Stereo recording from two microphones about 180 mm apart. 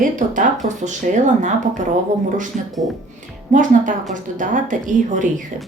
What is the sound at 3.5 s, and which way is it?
Speech, 45° right (ahead or behind).